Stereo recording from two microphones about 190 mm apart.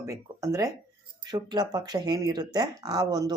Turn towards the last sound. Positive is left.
turn(degrees=-20)  # may be behind; listen again after turning